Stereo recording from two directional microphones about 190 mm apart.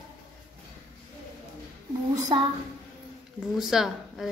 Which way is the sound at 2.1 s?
20° right (ahead or behind).